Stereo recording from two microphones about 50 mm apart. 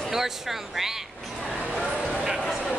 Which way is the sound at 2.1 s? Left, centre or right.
Centre.